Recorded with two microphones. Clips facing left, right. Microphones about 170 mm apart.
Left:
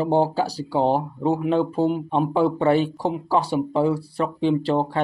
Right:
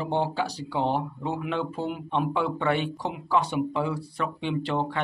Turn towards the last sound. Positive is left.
turn(degrees=35)  # may be behind; listen again after turning